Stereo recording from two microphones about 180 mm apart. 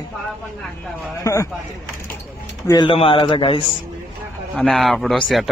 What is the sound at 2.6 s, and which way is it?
A man's voice, 20° left (ahead or behind).